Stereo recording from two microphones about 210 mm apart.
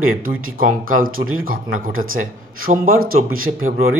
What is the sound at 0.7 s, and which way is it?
Speech, 40° right (ahead or behind).